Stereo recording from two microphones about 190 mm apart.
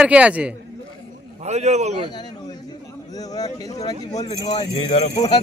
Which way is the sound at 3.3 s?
20° left (ahead or behind).